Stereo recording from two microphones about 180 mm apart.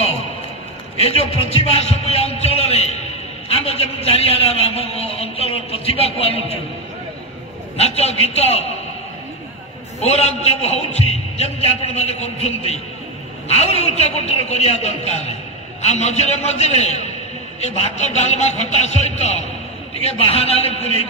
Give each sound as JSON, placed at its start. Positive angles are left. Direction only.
{"t": 1.0, "sound": "speech", "side_deg": 35}
{"t": 7.7, "sound": "speech", "side_deg": 35}
{"t": 9.9, "sound": "speech", "side_deg": 35}